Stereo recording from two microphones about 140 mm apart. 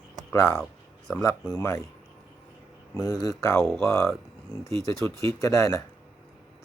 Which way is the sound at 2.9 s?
25° left (ahead or behind).